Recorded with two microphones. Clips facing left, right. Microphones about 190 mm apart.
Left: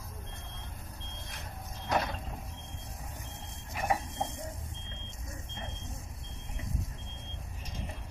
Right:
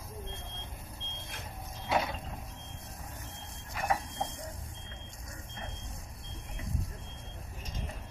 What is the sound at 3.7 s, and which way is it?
Printer, 20° left (ahead or behind).